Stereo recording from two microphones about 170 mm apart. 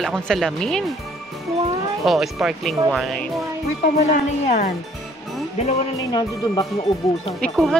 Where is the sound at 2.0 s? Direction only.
Centre (ahead or behind).